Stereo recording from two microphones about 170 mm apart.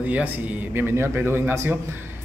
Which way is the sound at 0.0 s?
10° right (ahead or behind).